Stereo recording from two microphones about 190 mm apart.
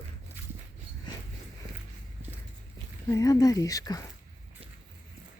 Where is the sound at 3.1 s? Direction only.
20° left (ahead or behind).